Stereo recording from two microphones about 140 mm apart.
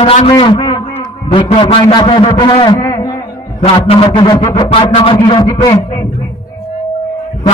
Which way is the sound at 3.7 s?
40° left (ahead or behind).